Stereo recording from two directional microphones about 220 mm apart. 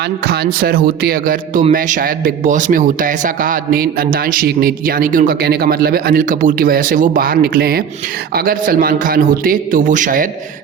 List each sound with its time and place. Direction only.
0.3 s a man's voice: 45° right (ahead or behind)